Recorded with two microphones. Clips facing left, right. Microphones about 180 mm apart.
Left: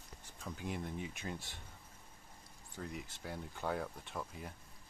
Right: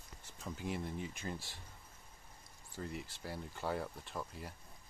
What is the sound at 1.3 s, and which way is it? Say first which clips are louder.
Speech: even; 20° left (ahead or behind).